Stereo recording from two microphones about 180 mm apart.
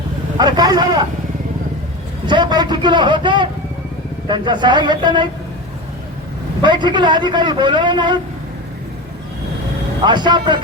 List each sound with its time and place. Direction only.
0.3 s a man's voice: 25° right (ahead or behind)
2.2 s a man's voice: 25° right (ahead or behind)
6.6 s a man's voice: 25° right (ahead or behind)
10.0 s a man's voice: 25° right (ahead or behind)